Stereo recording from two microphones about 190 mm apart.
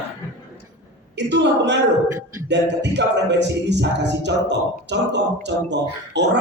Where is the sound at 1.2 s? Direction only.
65° right (ahead or behind).